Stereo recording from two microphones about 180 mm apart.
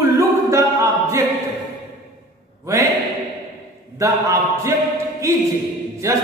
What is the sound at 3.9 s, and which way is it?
Speech, 20° right (ahead or behind).